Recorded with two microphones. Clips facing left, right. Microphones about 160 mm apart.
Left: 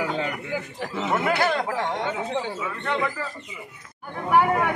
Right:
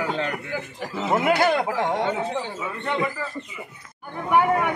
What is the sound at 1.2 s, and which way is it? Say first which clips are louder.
Speech: right 4 dB; 20° right (ahead or behind).